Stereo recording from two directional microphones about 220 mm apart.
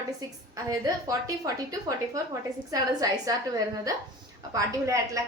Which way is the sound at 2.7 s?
15° right (ahead or behind).